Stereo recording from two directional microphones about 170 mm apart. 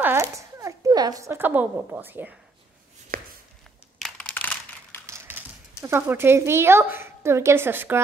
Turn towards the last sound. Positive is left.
turn(degrees=-10)  # may be behind; listen again after turning